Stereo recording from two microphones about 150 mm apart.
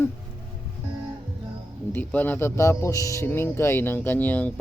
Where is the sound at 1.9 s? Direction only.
10° left (ahead or behind).